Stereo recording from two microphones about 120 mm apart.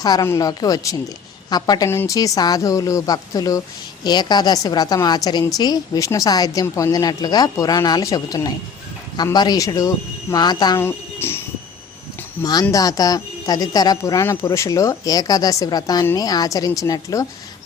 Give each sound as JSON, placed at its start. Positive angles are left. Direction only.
{"t": 0.0, "sound": "a woman's voice", "side_deg": 35}
{"t": 10.8, "sound": "speech", "side_deg": 20}
{"t": 12.4, "sound": "a woman's voice", "side_deg": 35}